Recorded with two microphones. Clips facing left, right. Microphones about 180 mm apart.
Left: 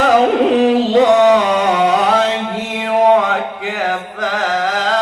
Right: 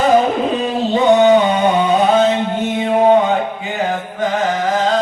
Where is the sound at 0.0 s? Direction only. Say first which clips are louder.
Left 2 dB; 85° left.